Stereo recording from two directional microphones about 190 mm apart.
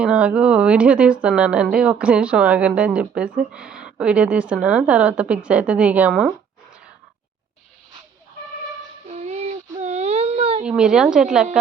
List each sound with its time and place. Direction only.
0.0 s speech: 5° right (ahead or behind)
9.0 s baby cry: 35° right (ahead or behind)
10.7 s speech: 5° right (ahead or behind)